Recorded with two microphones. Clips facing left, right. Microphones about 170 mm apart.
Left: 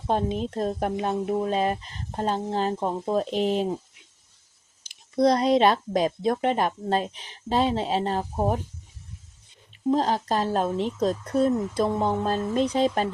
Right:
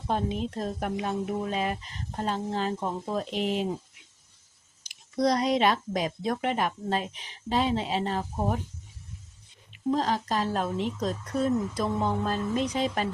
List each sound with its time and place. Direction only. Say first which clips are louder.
0.1 s speech: left 4 dB; 35° left (ahead or behind)
2.8 s speech: left 5 dB; 25° left (ahead or behind)
3.2 s speech: left 4 dB; 40° left (ahead or behind)
4.8 s speech: left 5 dB; 25° left (ahead or behind)
9.9 s speech: left 3 dB; 30° left (ahead or behind)